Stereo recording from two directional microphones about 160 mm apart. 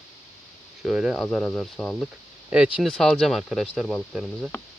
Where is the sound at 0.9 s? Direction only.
5° right (ahead or behind).